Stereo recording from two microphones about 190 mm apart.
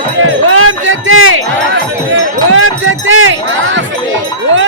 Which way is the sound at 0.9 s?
90° right.